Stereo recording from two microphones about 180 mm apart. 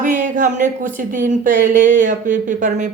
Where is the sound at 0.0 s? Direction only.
45° right (ahead or behind).